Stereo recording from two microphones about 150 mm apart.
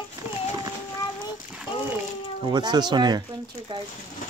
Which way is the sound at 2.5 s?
30° right (ahead or behind).